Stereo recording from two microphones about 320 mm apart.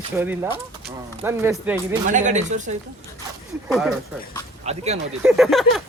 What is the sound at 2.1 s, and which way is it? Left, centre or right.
Speech, right.